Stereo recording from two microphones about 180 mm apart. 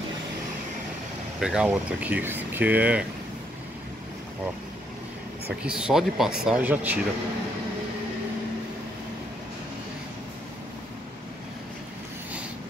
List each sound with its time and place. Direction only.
1.4 s speech: 5° right (ahead or behind)
5.6 s speech: 5° right (ahead or behind)